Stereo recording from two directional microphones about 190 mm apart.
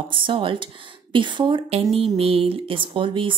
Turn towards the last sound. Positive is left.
turn(degrees=-25)  # may be behind; listen again after turning